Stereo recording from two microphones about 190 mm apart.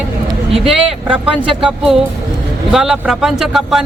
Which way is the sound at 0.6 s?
30° right (ahead or behind).